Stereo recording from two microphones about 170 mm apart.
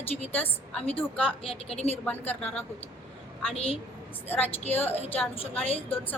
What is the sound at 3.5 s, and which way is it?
Speech, 35° left (ahead or behind).